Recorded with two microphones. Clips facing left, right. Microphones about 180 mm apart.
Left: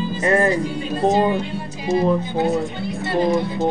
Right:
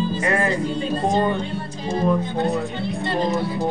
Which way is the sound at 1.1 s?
10° left (ahead or behind).